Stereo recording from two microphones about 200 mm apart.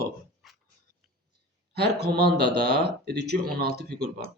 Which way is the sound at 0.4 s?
Centre (ahead or behind).